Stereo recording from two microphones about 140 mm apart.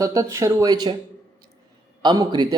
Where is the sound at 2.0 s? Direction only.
30° right (ahead or behind).